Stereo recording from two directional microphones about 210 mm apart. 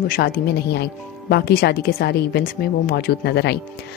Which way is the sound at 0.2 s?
45° left (ahead or behind).